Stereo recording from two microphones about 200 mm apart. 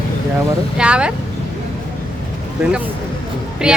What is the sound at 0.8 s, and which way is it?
Speech, 5° right (ahead or behind).